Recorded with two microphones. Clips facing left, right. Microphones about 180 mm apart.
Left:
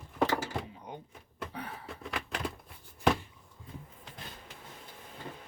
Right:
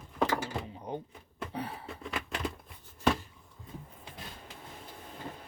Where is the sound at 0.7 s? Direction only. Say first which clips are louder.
Right 6 dB; 30° right (ahead or behind).